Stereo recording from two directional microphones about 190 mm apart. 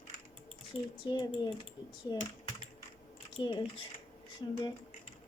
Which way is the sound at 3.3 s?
25° left (ahead or behind).